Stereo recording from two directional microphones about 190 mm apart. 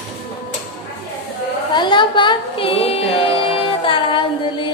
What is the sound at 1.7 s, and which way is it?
Speech, 25° left (ahead or behind).